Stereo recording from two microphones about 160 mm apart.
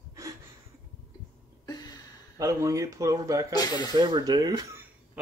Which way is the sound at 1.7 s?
25° left (ahead or behind).